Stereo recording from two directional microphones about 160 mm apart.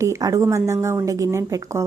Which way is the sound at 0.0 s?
20° right (ahead or behind).